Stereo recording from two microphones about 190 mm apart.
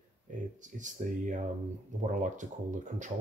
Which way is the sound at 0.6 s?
40° right (ahead or behind).